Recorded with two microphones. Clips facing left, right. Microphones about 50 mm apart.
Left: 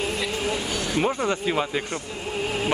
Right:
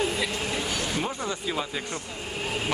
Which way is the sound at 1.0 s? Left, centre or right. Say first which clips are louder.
Left 7 dB; left.